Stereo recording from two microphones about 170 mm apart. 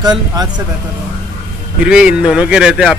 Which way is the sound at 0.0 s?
25° right (ahead or behind).